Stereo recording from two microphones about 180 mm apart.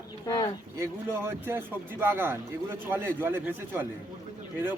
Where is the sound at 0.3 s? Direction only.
20° left (ahead or behind).